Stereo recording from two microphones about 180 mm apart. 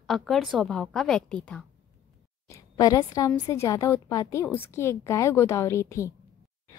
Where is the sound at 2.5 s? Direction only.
20° left (ahead or behind).